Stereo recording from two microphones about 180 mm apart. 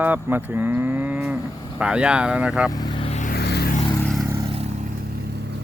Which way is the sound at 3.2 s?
60° left (ahead or behind).